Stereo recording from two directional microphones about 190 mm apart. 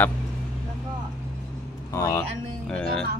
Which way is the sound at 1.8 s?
15° left (ahead or behind).